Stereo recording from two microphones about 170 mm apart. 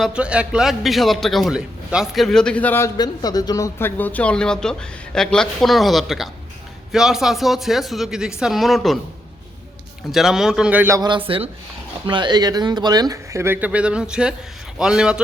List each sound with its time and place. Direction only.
0.0 s a man's voice: 5° right (ahead or behind)
10.1 s a man's voice: centre (ahead or behind)